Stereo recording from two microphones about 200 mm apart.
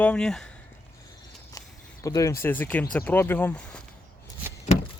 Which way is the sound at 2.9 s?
10° left (ahead or behind).